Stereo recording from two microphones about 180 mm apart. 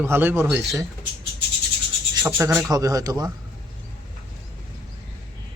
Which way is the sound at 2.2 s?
15° right (ahead or behind).